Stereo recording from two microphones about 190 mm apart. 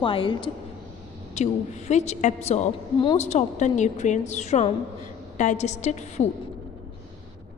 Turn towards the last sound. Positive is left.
turn(degrees=35)  # may be behind; listen again after turning